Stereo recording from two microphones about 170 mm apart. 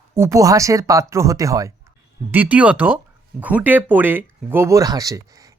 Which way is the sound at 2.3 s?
10° right (ahead or behind).